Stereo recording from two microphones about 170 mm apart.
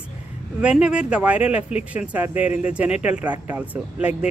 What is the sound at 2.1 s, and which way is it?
Speech, 10° right (ahead or behind).